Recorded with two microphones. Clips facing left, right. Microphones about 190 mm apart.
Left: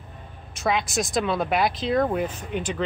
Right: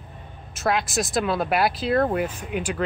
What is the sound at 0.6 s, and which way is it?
Speech, centre (ahead or behind).